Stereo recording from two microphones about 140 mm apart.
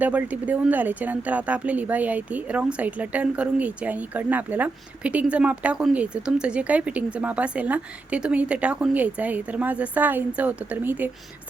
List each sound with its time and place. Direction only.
0.0 s speech: 10° right (ahead or behind)